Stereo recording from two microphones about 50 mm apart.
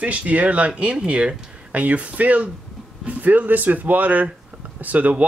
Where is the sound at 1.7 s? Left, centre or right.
Right.